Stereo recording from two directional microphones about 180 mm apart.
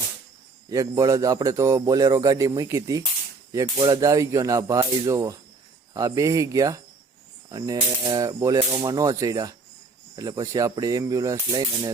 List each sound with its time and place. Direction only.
0.7 s a man's voice: 20° right (ahead or behind)